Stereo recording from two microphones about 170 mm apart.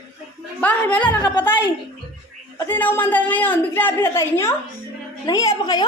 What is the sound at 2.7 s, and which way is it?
A woman's voice, 10° left (ahead or behind).